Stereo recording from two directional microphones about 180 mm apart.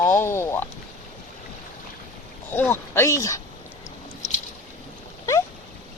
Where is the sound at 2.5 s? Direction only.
10° left (ahead or behind).